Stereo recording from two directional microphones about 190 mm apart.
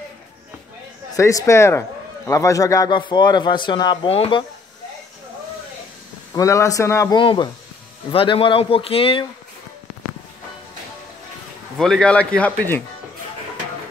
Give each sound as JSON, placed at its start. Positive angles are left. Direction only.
{"t": 1.1, "sound": "a man's voice", "side_deg": 15}
{"t": 6.3, "sound": "speech", "side_deg": 15}
{"t": 7.2, "sound": "a man's voice", "side_deg": 25}
{"t": 11.8, "sound": "speech", "side_deg": 5}